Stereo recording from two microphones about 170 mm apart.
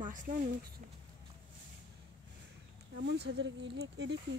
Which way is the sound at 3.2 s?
90° right.